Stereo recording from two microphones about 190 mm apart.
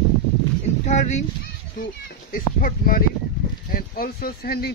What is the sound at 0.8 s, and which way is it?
Speech, 40° left (ahead or behind).